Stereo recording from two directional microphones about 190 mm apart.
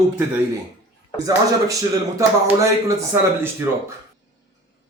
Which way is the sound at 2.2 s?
15° right (ahead or behind).